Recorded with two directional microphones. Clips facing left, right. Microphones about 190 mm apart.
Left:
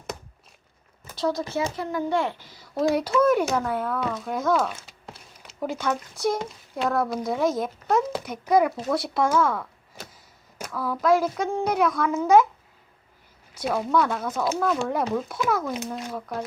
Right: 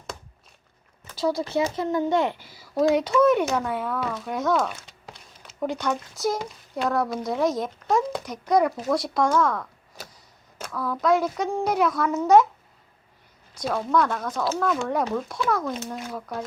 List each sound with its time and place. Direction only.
1.7 s a child's voice: 25° right (ahead or behind)
2.7 s speech: centre (ahead or behind)
13.5 s speech: 5° left (ahead or behind)